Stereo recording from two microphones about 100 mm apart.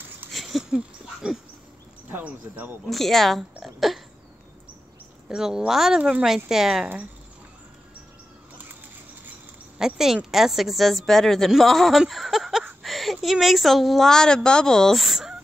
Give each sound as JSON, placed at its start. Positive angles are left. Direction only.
{"t": 0.3, "sound": "dog", "side_deg": 0}
{"t": 2.0, "sound": "speech", "side_deg": -15}
{"t": 2.9, "sound": "a woman's voice", "side_deg": 5}
{"t": 5.3, "sound": "a woman's voice", "side_deg": -5}
{"t": 9.8, "sound": "a woman's voice", "side_deg": -5}